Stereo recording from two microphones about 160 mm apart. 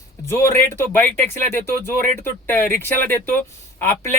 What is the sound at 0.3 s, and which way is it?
Speech, 15° left (ahead or behind).